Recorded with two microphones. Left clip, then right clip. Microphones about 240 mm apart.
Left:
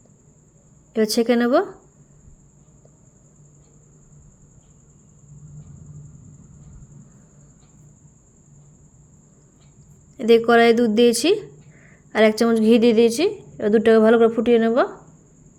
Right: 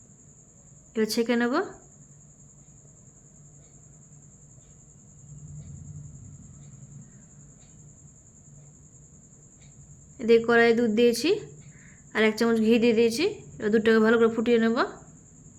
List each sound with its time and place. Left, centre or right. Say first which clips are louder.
0.9 s speech: left 6 dB; centre
10.2 s speech: left 5 dB; centre